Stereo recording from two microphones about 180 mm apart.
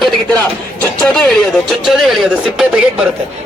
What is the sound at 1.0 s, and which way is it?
Speech, 5° left (ahead or behind).